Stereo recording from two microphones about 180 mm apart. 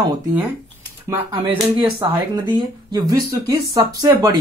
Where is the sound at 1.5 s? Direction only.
30° right (ahead or behind).